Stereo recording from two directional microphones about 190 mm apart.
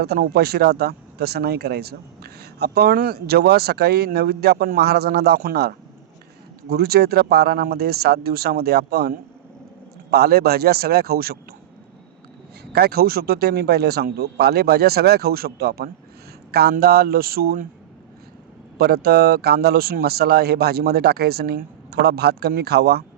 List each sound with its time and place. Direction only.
0.0 s speech: 55° right (ahead or behind)
12.7 s a man's voice: 55° right (ahead or behind)
18.8 s speech: 55° right (ahead or behind)